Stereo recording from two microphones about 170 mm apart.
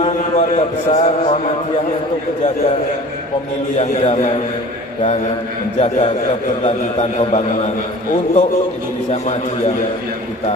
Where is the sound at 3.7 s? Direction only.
40° left (ahead or behind).